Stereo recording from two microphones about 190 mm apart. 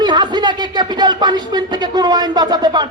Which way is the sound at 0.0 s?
25° right (ahead or behind).